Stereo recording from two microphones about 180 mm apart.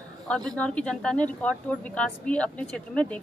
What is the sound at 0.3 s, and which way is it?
Speech, 5° left (ahead or behind).